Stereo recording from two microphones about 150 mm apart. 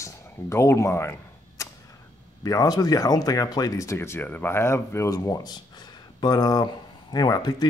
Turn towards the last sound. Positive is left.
turn(degrees=25)  # may be behind; listen again after turning